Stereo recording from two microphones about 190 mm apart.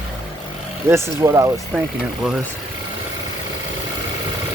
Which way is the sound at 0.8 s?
15° right (ahead or behind).